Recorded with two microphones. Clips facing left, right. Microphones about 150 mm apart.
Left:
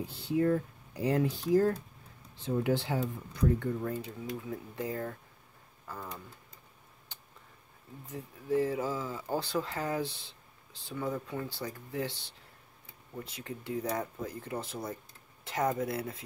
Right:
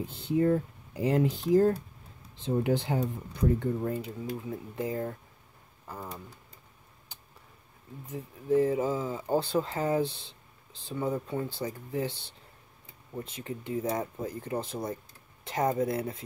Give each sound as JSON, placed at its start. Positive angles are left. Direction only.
{"t": 0.0, "sound": "speech", "side_deg": -20}
{"t": 8.1, "sound": "speech", "side_deg": -20}
{"t": 13.4, "sound": "speech", "side_deg": -25}